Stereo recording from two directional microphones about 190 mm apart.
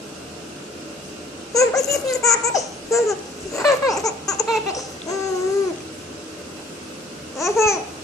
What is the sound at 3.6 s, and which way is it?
Laughter, 15° left (ahead or behind).